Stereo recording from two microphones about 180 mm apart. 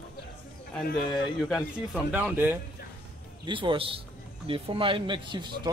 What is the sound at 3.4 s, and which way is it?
Speech, 30° right (ahead or behind).